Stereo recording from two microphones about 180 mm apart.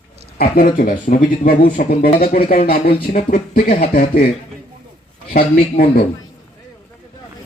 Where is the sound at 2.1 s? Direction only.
35° left (ahead or behind).